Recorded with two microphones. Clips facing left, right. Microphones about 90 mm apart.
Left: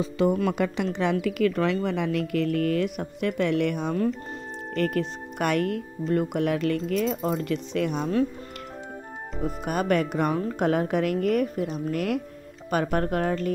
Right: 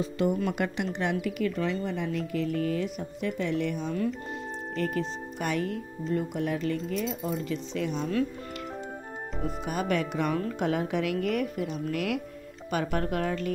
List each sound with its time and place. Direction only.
1.1 s speech: 75° left (ahead or behind); by 8.1 s 60° left (ahead or behind)
9.7 s a woman's voice: 50° left (ahead or behind)